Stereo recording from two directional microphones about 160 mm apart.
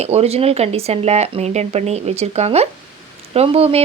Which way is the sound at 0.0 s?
40° right (ahead or behind).